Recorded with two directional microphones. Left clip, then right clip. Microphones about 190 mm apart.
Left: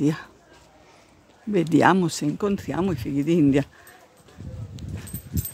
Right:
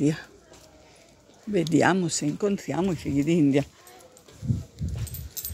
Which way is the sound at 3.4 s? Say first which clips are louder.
Left 3 dB; 35° left (ahead or behind).